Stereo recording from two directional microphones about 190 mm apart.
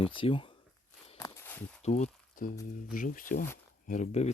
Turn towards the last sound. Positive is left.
turn(degrees=40)  # may be behind; listen again after turning